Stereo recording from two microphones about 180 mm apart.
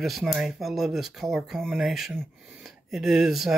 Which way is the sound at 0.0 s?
Centre (ahead or behind).